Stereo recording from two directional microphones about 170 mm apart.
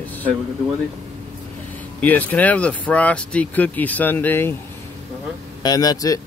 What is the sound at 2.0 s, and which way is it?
Speech, 10° left (ahead or behind).